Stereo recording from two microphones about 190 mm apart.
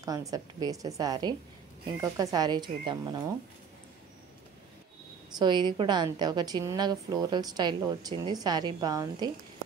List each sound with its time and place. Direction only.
0.0 s a woman's voice: 15° right (ahead or behind)
5.4 s a woman's voice: 25° right (ahead or behind)